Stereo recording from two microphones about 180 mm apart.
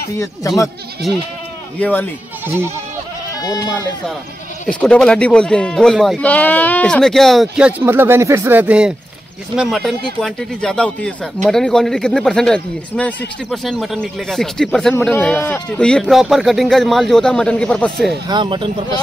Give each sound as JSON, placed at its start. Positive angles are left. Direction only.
{"t": 1.0, "sound": "speech", "side_deg": 0}
{"t": 2.4, "sound": "speech", "side_deg": -15}
{"t": 3.3, "sound": "speech", "side_deg": 20}
{"t": 4.6, "sound": "speech", "side_deg": 5}
{"t": 18.3, "sound": "speech", "side_deg": -25}